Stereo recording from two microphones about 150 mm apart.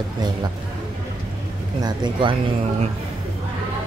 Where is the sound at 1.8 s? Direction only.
30° right (ahead or behind).